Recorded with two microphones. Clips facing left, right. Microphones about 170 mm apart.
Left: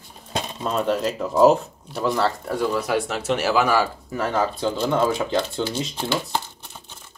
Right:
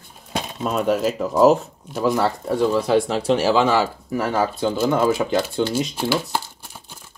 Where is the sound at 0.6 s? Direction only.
5° right (ahead or behind).